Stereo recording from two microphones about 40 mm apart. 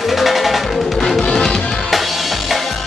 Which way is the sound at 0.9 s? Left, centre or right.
Centre.